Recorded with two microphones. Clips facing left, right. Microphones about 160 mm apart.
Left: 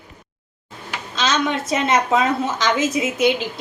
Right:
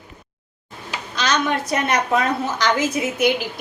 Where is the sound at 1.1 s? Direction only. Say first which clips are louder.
Even; 25° left (ahead or behind).